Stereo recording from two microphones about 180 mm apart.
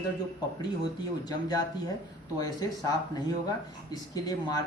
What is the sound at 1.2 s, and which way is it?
Speech, 20° left (ahead or behind).